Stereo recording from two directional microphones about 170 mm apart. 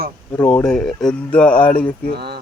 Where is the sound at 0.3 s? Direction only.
10° left (ahead or behind).